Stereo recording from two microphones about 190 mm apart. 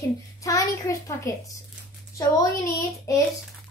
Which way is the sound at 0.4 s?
15° left (ahead or behind).